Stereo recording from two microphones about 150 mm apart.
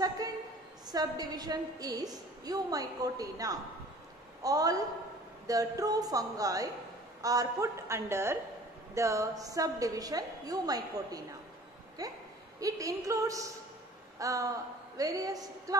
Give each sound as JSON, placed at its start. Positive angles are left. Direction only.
{"t": 0.8, "sound": "a woman's voice", "side_deg": -25}